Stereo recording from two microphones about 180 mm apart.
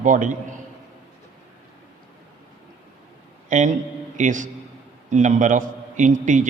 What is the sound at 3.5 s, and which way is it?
A man's voice, 45° right (ahead or behind).